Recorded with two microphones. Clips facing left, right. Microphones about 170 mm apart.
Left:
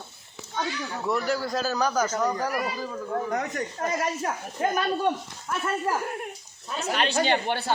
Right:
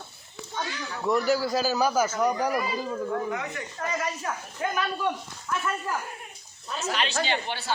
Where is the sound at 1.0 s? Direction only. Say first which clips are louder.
Right 3 dB; centre (ahead or behind).